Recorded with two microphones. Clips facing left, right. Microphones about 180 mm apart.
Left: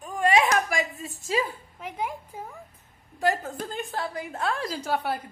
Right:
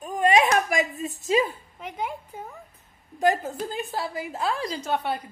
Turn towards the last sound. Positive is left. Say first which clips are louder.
# right 1 dB
turn(degrees=5)  # may be behind; listen again after turning